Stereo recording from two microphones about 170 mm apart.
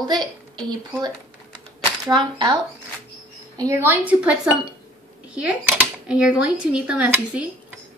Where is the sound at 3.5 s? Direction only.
15° right (ahead or behind).